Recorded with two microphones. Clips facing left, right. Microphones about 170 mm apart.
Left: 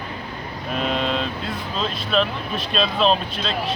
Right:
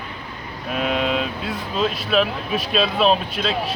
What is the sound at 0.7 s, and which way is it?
Speech, 5° right (ahead or behind).